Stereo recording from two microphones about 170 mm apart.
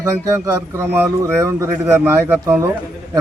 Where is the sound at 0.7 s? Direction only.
15° right (ahead or behind).